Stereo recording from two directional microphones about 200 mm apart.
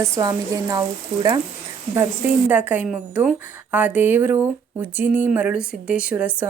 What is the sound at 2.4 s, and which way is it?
Speech, 10° right (ahead or behind).